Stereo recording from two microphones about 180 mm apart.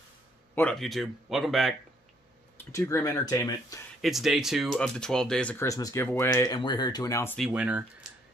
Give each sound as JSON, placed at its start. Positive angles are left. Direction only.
{"t": 0.6, "sound": "speech", "side_deg": 5}
{"t": 2.5, "sound": "speech", "side_deg": 15}
{"t": 4.0, "sound": "speech", "side_deg": 0}
{"t": 7.3, "sound": "speech", "side_deg": -5}